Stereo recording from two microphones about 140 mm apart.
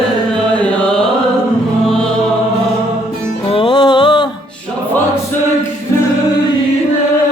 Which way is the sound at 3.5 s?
40° left (ahead or behind).